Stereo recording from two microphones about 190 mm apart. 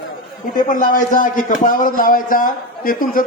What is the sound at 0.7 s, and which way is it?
Speech, 45° left (ahead or behind).